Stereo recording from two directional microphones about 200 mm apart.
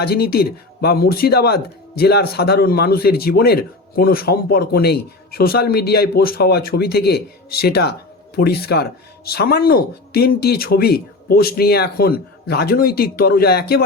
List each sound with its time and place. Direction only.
0.0 s speech: 50° left (ahead or behind)